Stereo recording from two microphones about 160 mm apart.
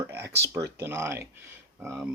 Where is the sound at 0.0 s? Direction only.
15° right (ahead or behind).